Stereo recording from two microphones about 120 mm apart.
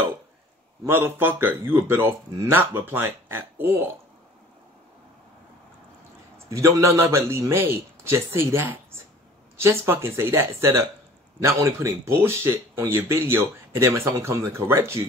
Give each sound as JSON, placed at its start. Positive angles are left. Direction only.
{"t": 0.8, "sound": "speech", "side_deg": -20}
{"t": 6.3, "sound": "speech", "side_deg": -25}